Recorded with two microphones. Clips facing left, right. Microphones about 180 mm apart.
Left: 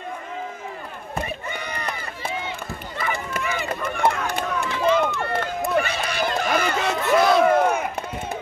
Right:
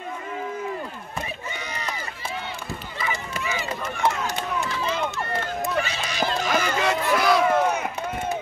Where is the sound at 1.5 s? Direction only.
55° left (ahead or behind).